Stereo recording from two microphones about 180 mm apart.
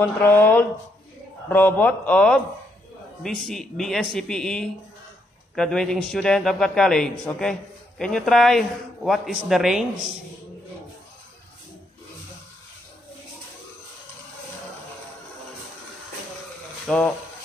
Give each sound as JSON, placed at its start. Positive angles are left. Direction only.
{"t": 0.0, "sound": "a man's voice", "side_deg": 10}
{"t": 16.8, "sound": "speech", "side_deg": 5}